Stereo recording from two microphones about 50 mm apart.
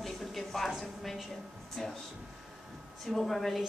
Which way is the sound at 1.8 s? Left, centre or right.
Centre.